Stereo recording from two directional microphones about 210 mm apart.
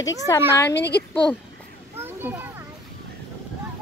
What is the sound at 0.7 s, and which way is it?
Speech, 55° left (ahead or behind).